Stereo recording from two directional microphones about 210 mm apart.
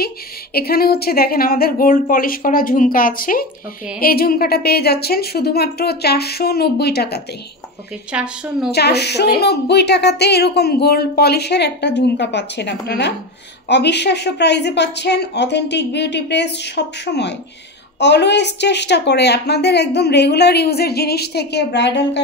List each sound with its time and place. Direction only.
0.0 s a woman's voice: 45° left (ahead or behind)
8.1 s speech: 5° right (ahead or behind)
8.7 s a woman's voice: 50° left (ahead or behind)